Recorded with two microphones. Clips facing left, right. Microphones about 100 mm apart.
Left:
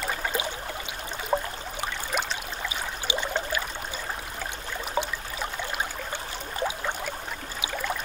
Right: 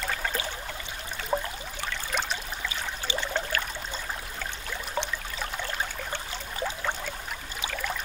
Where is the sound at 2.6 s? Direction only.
15° left (ahead or behind).